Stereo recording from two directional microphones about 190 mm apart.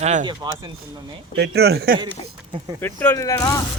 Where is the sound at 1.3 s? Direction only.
60° right (ahead or behind).